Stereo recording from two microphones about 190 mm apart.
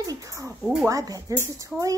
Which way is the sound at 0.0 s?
20° right (ahead or behind).